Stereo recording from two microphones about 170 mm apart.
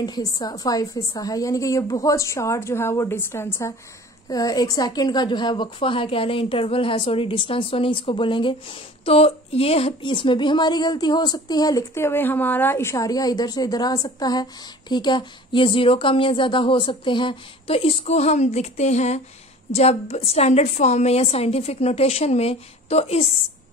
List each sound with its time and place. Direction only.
0.0 s a woman's voice: 25° left (ahead or behind)